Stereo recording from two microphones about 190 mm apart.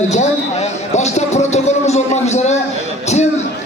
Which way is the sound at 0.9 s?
35° left (ahead or behind).